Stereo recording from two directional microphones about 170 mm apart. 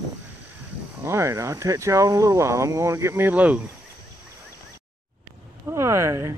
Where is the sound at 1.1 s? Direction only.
15° right (ahead or behind).